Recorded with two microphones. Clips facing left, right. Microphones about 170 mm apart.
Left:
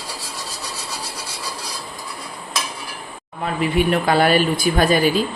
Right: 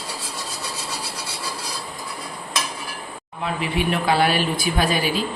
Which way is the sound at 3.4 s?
45° left (ahead or behind).